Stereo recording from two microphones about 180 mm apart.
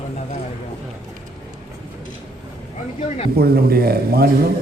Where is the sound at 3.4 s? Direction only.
60° right (ahead or behind).